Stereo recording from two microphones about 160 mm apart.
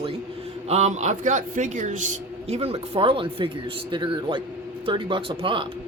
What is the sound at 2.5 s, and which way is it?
Speech, 40° right (ahead or behind).